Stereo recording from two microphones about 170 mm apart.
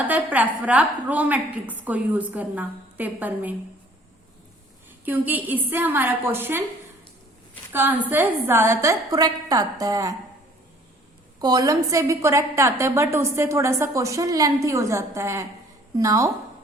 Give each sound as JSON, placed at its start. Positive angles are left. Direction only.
{"t": 0.0, "sound": "a woman's voice", "side_deg": -10}
{"t": 5.0, "sound": "a woman's voice", "side_deg": -10}
{"t": 7.7, "sound": "a woman's voice", "side_deg": -10}
{"t": 11.3, "sound": "a woman's voice", "side_deg": -25}